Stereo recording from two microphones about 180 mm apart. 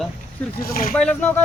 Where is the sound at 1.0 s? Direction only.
5° left (ahead or behind).